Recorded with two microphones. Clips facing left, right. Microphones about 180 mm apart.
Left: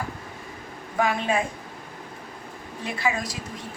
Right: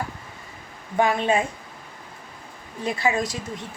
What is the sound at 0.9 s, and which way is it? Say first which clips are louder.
Speech: right 3 dB; 30° right (ahead or behind).